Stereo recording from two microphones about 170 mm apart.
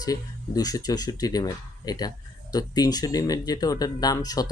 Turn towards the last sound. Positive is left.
turn(degrees=20)  # may be behind; listen again after turning